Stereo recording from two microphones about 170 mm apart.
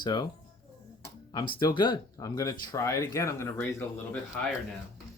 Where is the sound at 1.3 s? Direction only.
25° left (ahead or behind); by 4.4 s 10° left (ahead or behind).